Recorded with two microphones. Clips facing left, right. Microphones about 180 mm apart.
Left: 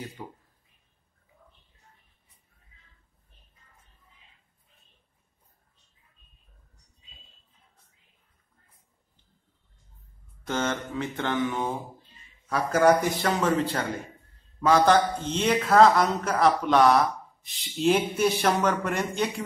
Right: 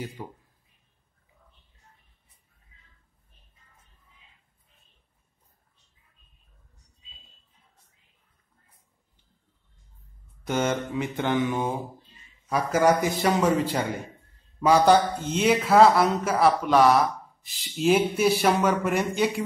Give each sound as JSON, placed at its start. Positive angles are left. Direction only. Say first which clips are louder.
{"t": 0.2, "sound": "a man's voice", "louder": "right 2 dB", "side_deg": -10}
{"t": 10.4, "sound": "a man's voice", "louder": "right 3 dB", "side_deg": -10}